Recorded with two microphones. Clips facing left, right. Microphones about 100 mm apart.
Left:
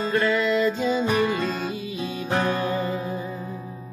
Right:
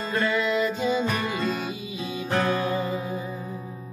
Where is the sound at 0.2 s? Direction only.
15° right (ahead or behind).